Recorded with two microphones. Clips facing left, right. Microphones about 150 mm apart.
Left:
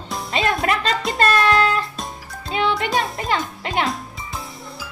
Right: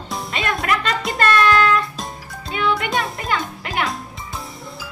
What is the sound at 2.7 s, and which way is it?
Music, centre (ahead or behind).